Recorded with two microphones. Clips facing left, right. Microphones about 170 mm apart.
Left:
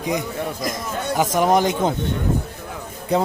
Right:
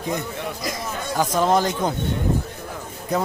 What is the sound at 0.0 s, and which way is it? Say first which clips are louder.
Speech: left 3 dB; 15° left (ahead or behind).